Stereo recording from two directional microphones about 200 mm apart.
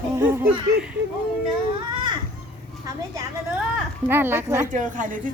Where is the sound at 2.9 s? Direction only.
15° right (ahead or behind).